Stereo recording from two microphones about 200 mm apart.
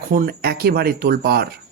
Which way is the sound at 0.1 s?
50° right (ahead or behind).